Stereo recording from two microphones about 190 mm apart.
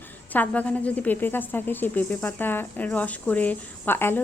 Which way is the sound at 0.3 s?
5° left (ahead or behind).